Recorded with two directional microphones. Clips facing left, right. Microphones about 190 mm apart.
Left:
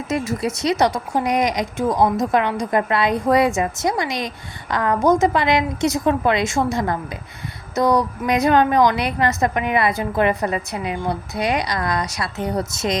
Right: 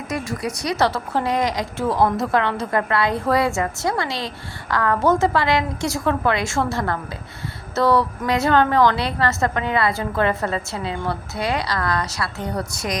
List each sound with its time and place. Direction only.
0.1 s a woman's voice: 25° left (ahead or behind)